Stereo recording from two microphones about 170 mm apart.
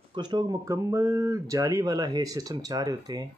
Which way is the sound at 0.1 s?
25° right (ahead or behind).